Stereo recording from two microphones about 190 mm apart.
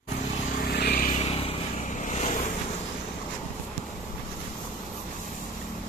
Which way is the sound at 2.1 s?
35° left (ahead or behind).